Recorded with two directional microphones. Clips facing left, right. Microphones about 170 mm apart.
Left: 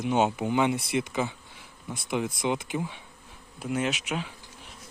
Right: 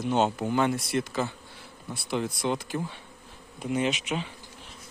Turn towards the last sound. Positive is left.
turn(degrees=10)  # may be behind; listen again after turning